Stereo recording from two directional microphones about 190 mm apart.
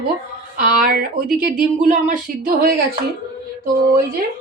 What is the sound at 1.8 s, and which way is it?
A woman's voice, 45° right (ahead or behind).